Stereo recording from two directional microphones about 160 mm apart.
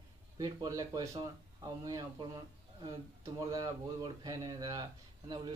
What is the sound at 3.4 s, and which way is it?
Speech, 25° right (ahead or behind).